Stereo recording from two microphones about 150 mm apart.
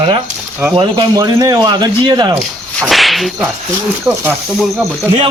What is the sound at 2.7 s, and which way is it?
Whip, 5° left (ahead or behind).